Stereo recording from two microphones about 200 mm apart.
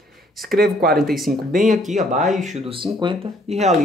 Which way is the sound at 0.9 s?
Centre (ahead or behind).